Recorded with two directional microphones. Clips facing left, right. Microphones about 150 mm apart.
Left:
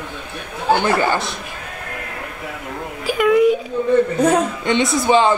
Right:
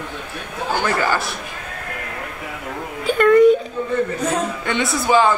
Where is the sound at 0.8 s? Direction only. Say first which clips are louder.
Left 2 dB; 20° left (ahead or behind).